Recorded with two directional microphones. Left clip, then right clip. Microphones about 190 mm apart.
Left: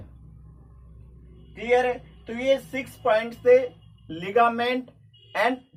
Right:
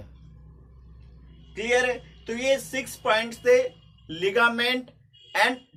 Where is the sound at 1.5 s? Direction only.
25° right (ahead or behind).